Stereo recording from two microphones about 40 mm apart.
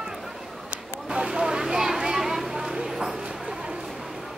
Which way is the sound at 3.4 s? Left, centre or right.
Centre.